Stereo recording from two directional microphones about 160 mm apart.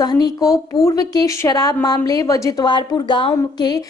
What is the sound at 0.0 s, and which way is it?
A woman's voice, 25° left (ahead or behind).